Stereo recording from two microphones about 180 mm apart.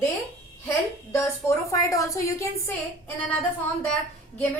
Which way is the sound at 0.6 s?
15° left (ahead or behind).